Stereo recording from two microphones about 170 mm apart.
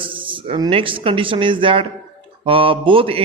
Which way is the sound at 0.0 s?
30° right (ahead or behind).